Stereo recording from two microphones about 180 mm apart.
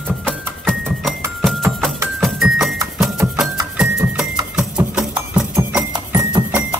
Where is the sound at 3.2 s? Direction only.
10° right (ahead or behind).